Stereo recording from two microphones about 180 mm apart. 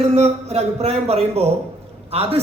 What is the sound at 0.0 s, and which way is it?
A man's voice, 35° right (ahead or behind).